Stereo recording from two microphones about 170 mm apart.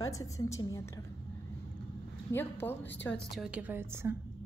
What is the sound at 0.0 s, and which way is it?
Speech, 20° left (ahead or behind).